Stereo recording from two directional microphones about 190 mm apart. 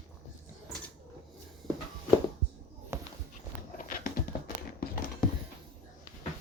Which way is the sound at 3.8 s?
45° left (ahead or behind).